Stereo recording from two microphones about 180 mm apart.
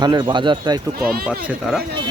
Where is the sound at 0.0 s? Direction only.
25° right (ahead or behind).